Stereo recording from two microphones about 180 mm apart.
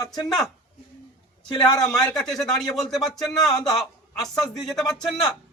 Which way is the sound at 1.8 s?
5° left (ahead or behind).